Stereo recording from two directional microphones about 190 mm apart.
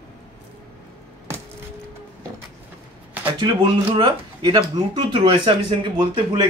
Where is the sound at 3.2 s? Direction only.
25° right (ahead or behind).